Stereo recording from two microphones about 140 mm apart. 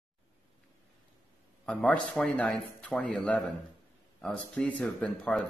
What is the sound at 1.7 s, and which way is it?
A man's voice, 5° left (ahead or behind).